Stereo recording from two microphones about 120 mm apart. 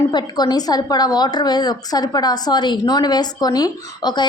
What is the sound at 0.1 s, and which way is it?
A woman's voice, 35° left (ahead or behind).